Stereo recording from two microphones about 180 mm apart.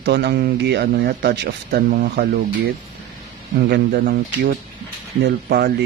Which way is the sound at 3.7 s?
60° right (ahead or behind).